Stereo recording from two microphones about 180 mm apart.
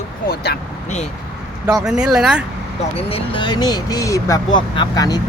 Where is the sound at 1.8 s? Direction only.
5° right (ahead or behind).